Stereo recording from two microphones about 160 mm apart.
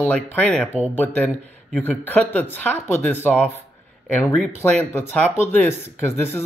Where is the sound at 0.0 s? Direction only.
10° left (ahead or behind).